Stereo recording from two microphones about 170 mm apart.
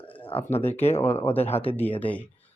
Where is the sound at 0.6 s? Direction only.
10° left (ahead or behind).